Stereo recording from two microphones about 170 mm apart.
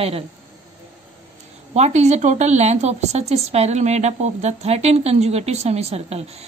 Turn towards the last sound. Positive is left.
turn(degrees=-35)  # may be behind; listen again after turning